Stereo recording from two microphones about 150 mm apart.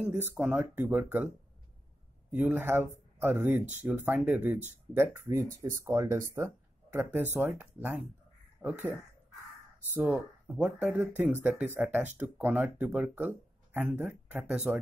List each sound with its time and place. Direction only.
0.1 s speech: 15° right (ahead or behind)
2.3 s speech: 15° right (ahead or behind)
9.9 s speech: 10° right (ahead or behind)